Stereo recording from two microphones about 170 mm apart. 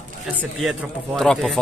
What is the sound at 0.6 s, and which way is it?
A man's voice, centre (ahead or behind).